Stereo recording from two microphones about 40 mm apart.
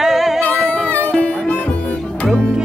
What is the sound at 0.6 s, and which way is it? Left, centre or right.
Music, left.